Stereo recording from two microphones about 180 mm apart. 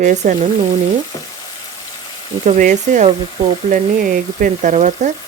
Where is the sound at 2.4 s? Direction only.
45° right (ahead or behind).